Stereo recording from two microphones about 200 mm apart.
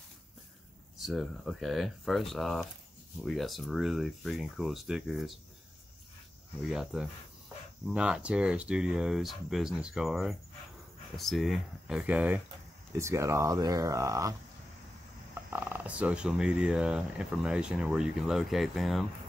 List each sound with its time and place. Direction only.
0.9 s speech: centre (ahead or behind)
6.6 s speech: centre (ahead or behind)
15.3 s speech: 10° right (ahead or behind)